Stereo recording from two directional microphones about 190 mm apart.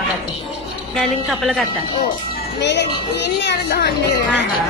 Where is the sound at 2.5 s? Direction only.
65° left (ahead or behind).